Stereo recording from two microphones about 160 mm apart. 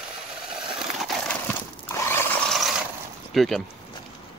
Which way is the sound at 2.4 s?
Centre (ahead or behind).